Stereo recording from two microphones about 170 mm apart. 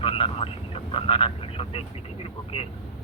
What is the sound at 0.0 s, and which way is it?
Speech, 30° left (ahead or behind).